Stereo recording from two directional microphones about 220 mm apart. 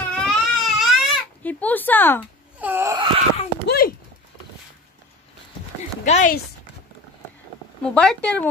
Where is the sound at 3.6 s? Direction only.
45° left (ahead or behind).